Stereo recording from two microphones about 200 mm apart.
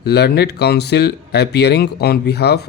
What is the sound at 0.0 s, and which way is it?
Speech, 55° left (ahead or behind).